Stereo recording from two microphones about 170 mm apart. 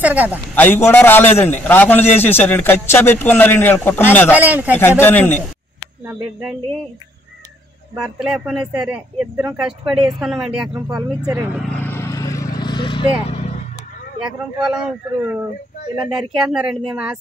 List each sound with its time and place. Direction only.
0.0 s a man's voice: 10° right (ahead or behind)
0.6 s a man's voice: 10° left (ahead or behind)
4.4 s a man's voice: 10° right (ahead or behind)
5.0 s a man's voice: 10° left (ahead or behind)
8.0 s speech: 5° right (ahead or behind)
11.8 s vehicle: 15° left (ahead or behind)
13.4 s vehicle: 45° left (ahead or behind)
16.0 s speech: 5° right (ahead or behind)